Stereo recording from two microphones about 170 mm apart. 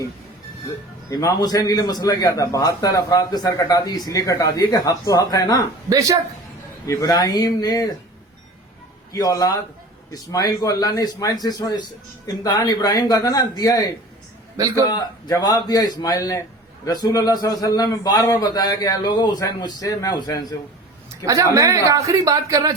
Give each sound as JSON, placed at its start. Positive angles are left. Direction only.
{"t": 1.1, "sound": "a man's voice", "side_deg": 25}
{"t": 5.9, "sound": "a man's voice", "side_deg": -20}
{"t": 6.8, "sound": "a man's voice", "side_deg": 20}
{"t": 9.1, "sound": "a man's voice", "side_deg": 20}
{"t": 21.2, "sound": "a man's voice", "side_deg": -20}